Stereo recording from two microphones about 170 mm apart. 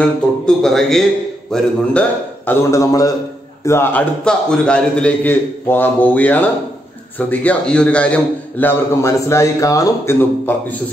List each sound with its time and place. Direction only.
0.0 s a man's voice: 5° left (ahead or behind)
2.7 s a man's voice: 20° left (ahead or behind)